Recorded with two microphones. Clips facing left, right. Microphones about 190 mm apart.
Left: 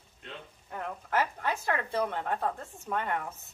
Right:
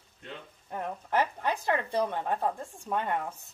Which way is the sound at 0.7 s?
20° right (ahead or behind).